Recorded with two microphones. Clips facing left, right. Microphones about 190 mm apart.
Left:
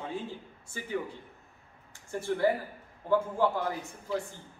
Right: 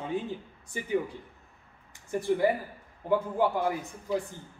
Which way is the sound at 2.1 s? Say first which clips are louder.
Right 2 dB; 15° right (ahead or behind).